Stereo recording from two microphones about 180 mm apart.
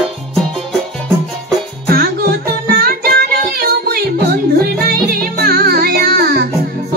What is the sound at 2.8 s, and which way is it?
Music, 55° right (ahead or behind).